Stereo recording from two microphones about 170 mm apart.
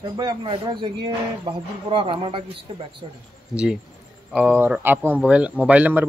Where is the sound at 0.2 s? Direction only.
25° right (ahead or behind).